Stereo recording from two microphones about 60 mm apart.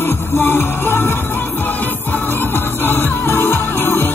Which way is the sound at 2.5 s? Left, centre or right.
Left.